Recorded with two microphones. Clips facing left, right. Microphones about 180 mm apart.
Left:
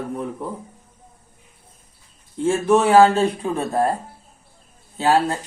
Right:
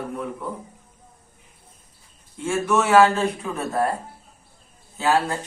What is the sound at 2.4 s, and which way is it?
Speech, 35° left (ahead or behind).